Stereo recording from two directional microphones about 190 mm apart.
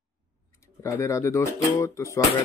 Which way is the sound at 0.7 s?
15° left (ahead or behind).